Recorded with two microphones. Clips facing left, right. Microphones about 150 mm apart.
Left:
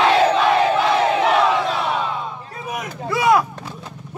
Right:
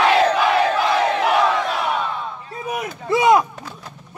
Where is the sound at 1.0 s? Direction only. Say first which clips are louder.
Left 1 dB; centre (ahead or behind).